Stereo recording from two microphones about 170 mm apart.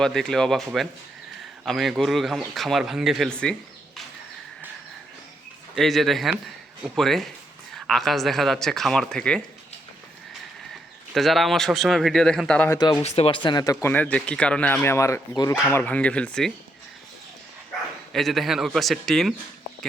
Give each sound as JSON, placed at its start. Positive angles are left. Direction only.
{"t": 0.0, "sound": "a man's voice", "side_deg": 5}
{"t": 5.7, "sound": "a man's voice", "side_deg": 0}
{"t": 11.1, "sound": "a man's voice", "side_deg": 0}
{"t": 12.7, "sound": "speech", "side_deg": 25}
{"t": 13.9, "sound": "speech", "side_deg": 10}
{"t": 18.1, "sound": "a man's voice", "side_deg": 0}